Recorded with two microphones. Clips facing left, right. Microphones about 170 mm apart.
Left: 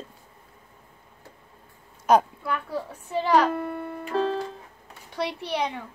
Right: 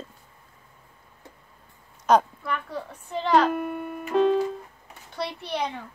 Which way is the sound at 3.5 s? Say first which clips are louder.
Right 1 dB; 15° right (ahead or behind).